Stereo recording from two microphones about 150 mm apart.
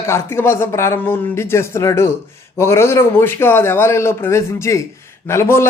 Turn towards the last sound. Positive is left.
turn(degrees=15)  # may be behind; listen again after turning